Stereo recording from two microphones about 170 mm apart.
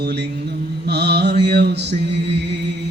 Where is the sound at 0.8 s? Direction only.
80° right.